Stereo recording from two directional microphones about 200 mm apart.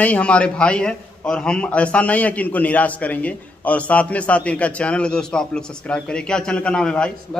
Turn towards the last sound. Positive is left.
turn(degrees=5)  # may be behind; listen again after turning